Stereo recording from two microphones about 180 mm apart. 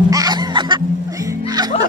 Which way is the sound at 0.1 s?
20° right (ahead or behind).